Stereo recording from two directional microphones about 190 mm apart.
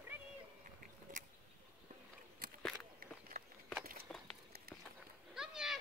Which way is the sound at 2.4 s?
50° right (ahead or behind).